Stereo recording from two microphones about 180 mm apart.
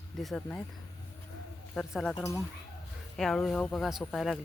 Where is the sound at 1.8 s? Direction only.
Centre (ahead or behind).